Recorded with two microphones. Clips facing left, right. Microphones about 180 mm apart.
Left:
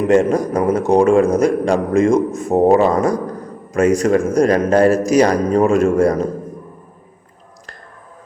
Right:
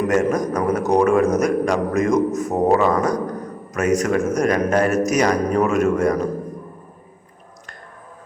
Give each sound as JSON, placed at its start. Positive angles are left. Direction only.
{"t": 0.0, "sound": "a man's voice", "side_deg": 25}